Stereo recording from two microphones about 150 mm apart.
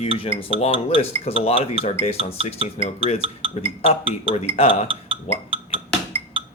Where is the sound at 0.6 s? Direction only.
40° left (ahead or behind).